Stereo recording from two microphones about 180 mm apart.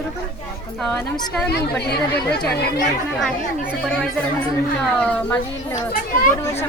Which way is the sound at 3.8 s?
5° left (ahead or behind).